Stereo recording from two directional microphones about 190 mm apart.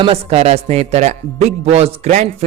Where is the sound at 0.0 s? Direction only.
30° right (ahead or behind).